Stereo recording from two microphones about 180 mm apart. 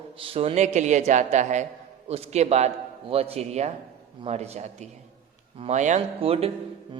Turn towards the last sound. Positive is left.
turn(degrees=-35)  # may be behind; listen again after turning